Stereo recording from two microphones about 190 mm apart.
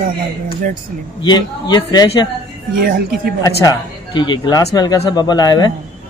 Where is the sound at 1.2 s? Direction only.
20° left (ahead or behind).